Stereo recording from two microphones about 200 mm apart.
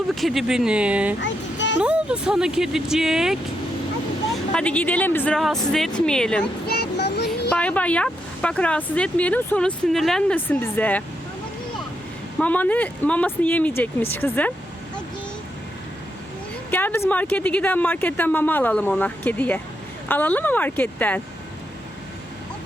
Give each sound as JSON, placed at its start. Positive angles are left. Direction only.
{"t": 0.2, "sound": "speech", "side_deg": 0}
{"t": 1.2, "sound": "a sound", "side_deg": 65}
{"t": 1.8, "sound": "speech", "side_deg": -5}
{"t": 4.5, "sound": "speech", "side_deg": 5}
{"t": 6.7, "sound": "a sound", "side_deg": 55}
{"t": 7.5, "sound": "speech", "side_deg": 5}
{"t": 12.4, "sound": "speech", "side_deg": 10}
{"t": 16.7, "sound": "speech", "side_deg": 10}